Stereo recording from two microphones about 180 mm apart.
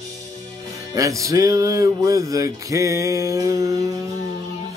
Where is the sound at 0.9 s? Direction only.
20° right (ahead or behind).